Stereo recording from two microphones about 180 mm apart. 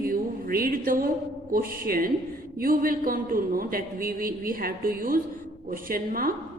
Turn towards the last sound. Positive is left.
turn(degrees=-50)  # may be behind; listen again after turning